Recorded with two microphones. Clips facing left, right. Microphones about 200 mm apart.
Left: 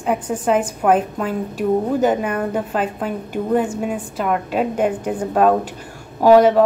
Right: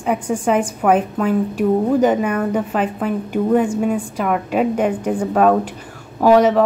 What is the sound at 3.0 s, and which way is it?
A woman's voice, 5° right (ahead or behind).